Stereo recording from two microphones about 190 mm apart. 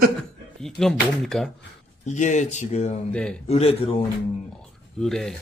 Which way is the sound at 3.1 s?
5° left (ahead or behind).